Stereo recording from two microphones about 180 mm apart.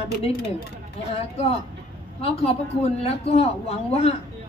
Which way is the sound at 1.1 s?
35° left (ahead or behind).